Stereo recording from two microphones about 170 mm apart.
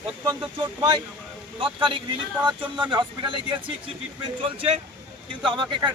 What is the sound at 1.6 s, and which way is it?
Speech, 30° right (ahead or behind).